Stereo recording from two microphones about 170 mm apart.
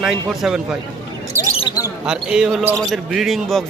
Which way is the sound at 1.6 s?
25° left (ahead or behind).